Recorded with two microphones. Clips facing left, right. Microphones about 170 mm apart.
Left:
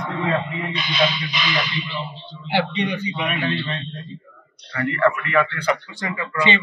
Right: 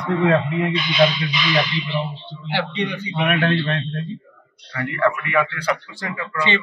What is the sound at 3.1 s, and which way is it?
A man's voice, 65° right (ahead or behind).